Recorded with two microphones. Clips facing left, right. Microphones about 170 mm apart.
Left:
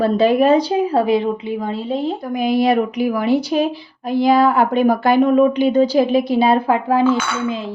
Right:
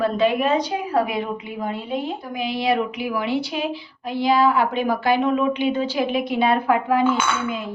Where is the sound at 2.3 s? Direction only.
45° left (ahead or behind); by 7.7 s 30° left (ahead or behind).